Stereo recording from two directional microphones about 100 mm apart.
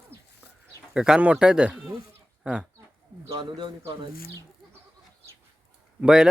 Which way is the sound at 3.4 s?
50° right (ahead or behind).